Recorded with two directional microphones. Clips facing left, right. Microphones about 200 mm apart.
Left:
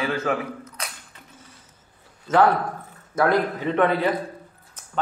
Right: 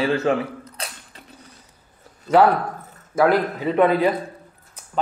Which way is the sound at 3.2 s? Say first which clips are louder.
Right 3 dB; 10° right (ahead or behind).